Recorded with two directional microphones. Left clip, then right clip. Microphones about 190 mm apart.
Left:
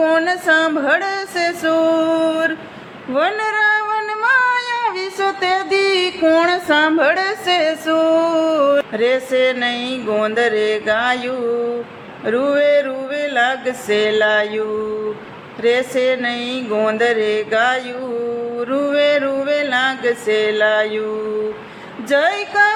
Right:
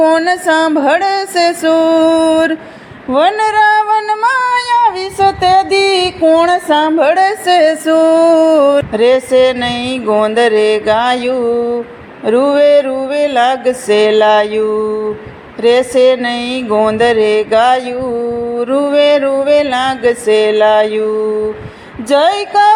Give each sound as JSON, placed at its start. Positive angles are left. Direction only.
{"t": 0.0, "sound": "female singing", "side_deg": -20}
{"t": 15.6, "sound": "female singing", "side_deg": -25}
{"t": 22.1, "sound": "female singing", "side_deg": -25}